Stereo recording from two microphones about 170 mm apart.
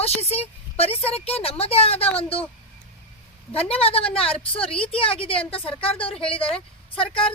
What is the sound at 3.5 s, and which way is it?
A woman's voice, 35° left (ahead or behind).